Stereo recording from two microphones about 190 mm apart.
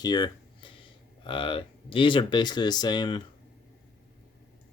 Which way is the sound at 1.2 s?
25° left (ahead or behind).